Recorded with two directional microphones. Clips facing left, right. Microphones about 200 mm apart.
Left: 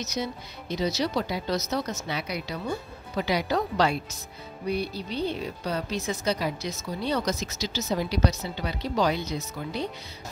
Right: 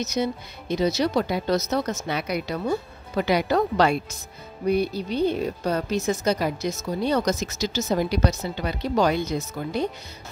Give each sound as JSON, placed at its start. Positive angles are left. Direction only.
{"t": 0.0, "sound": "a woman's voice", "side_deg": -55}